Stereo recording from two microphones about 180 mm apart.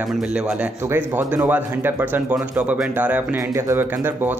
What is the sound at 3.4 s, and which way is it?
Speech, 20° right (ahead or behind).